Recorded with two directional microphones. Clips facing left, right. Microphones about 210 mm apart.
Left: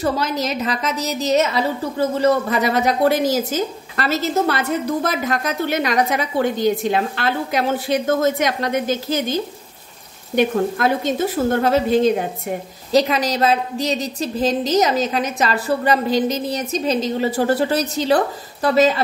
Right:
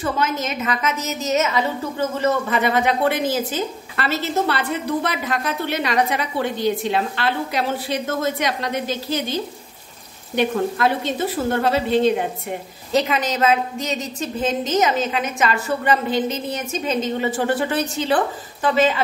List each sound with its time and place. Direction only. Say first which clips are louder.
0.0 s a woman's voice: left 2 dB; 35° left (ahead or behind)